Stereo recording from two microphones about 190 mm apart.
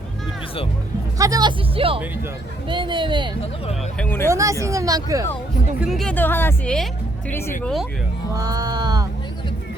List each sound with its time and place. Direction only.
1.2 s speech: 20° right (ahead or behind)
3.9 s speech: 10° left (ahead or behind)
4.3 s speech: 15° right (ahead or behind)
5.8 s speech: centre (ahead or behind)
7.6 s speech: centre (ahead or behind)
8.4 s speech: 20° right (ahead or behind)